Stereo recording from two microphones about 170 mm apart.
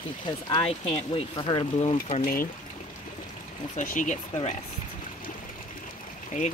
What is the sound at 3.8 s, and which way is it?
Speech, 50° left (ahead or behind).